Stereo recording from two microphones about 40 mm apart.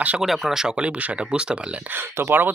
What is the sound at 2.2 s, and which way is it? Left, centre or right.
Speech, right.